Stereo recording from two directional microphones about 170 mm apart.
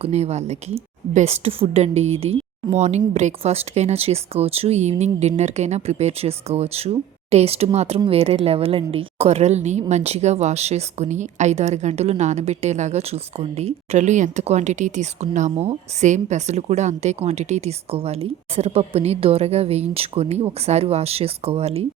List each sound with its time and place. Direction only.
0.0 s a woman's voice: 40° right (ahead or behind)